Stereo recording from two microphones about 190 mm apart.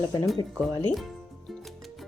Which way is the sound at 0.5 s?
Centre (ahead or behind).